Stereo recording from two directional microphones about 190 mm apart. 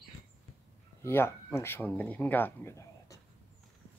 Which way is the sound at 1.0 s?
10° left (ahead or behind).